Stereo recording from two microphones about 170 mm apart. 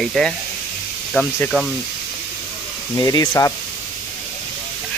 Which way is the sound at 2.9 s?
20° left (ahead or behind).